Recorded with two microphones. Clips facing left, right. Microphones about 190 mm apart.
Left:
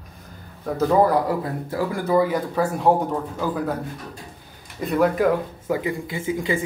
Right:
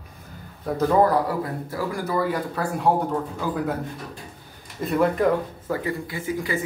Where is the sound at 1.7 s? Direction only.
20° left (ahead or behind).